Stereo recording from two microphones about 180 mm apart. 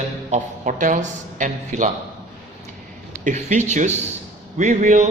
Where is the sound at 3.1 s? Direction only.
40° right (ahead or behind).